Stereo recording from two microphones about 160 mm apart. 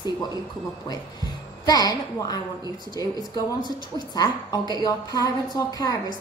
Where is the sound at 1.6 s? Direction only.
25° left (ahead or behind).